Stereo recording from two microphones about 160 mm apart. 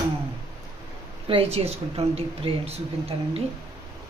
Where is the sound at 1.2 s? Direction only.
35° right (ahead or behind).